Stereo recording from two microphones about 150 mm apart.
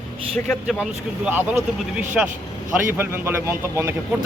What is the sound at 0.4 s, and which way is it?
Speech, centre (ahead or behind).